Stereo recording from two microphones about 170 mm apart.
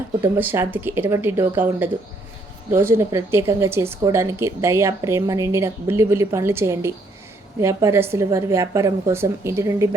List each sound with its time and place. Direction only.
0.2 s speech: 15° right (ahead or behind)